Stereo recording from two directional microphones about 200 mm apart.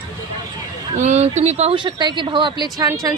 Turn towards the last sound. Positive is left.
turn(degrees=-15)  # may be behind; listen again after turning